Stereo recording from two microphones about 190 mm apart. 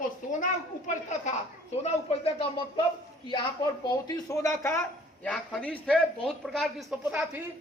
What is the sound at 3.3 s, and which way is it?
A man's voice, 25° left (ahead or behind).